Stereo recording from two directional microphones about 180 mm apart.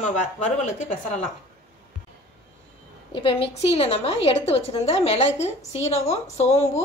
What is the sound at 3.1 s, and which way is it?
A woman's voice, 30° left (ahead or behind).